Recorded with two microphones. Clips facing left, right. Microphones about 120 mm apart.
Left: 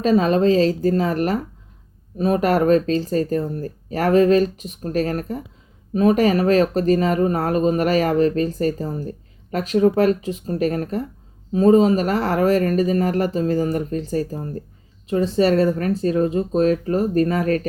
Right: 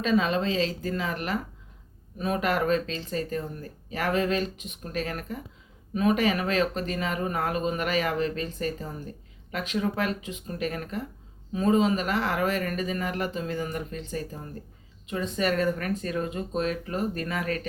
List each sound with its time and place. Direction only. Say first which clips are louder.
0.0 s speech: left 8 dB; 40° left (ahead or behind)